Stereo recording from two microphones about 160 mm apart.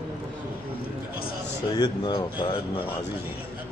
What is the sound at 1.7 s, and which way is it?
Speech, 30° left (ahead or behind).